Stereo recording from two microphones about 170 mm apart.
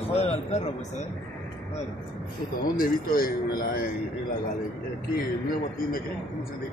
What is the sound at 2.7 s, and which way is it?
A man's voice, 55° left (ahead or behind).